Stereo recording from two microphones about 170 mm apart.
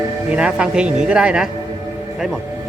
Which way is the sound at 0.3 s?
5° right (ahead or behind).